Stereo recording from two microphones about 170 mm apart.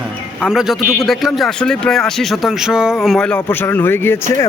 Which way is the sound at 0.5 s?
Centre (ahead or behind).